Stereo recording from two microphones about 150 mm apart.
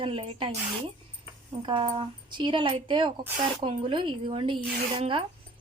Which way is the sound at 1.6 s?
35° right (ahead or behind).